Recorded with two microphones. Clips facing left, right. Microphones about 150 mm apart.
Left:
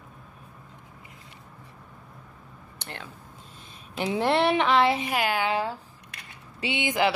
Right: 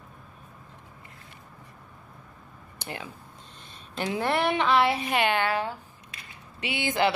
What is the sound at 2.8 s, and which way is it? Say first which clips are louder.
Speech: right 3 dB; 5° right (ahead or behind).